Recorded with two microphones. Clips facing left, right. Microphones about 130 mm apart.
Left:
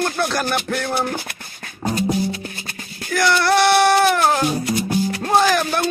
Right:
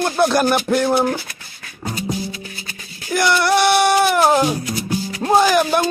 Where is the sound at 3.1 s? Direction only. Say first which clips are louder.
Right 1 dB; 15° right (ahead or behind).